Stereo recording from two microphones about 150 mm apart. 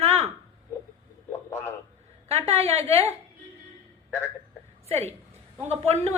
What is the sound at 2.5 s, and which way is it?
Speech, 45° right (ahead or behind).